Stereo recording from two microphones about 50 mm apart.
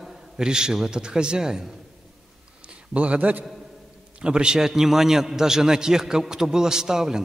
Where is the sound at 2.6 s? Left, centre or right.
Right.